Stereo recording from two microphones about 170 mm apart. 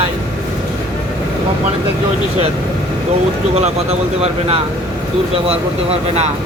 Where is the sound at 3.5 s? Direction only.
40° right (ahead or behind).